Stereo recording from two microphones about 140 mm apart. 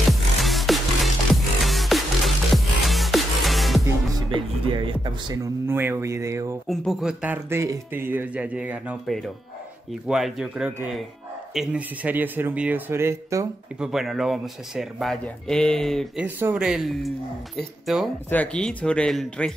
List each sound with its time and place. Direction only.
0.1 s music: centre (ahead or behind)
4.3 s speech: 35° right (ahead or behind)
6.7 s speech: centre (ahead or behind); by 13.5 s 20° right (ahead or behind)
13.7 s speech: centre (ahead or behind)
16.2 s speech: 15° right (ahead or behind); by 19.5 s 5° left (ahead or behind)